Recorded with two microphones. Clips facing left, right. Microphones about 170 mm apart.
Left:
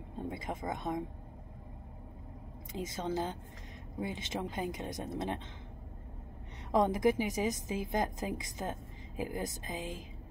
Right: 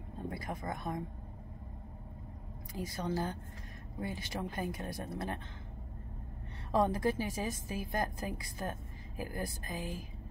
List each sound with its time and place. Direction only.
0.3 s speech: 20° left (ahead or behind)
2.7 s a woman's voice: 20° left (ahead or behind)
6.7 s a woman's voice: 15° left (ahead or behind)